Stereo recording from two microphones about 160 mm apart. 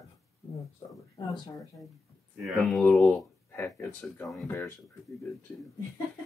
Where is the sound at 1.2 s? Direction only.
25° left (ahead or behind).